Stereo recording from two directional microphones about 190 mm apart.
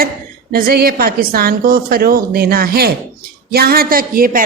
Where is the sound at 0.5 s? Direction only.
50° right (ahead or behind).